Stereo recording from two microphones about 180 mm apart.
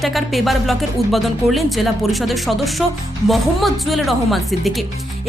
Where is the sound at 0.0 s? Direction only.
Centre (ahead or behind).